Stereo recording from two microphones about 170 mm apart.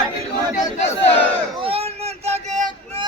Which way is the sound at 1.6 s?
35° right (ahead or behind).